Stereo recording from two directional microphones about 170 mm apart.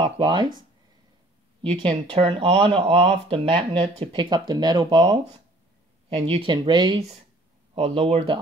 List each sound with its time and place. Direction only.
0.0 s speech: 25° right (ahead or behind)
1.7 s speech: 30° right (ahead or behind)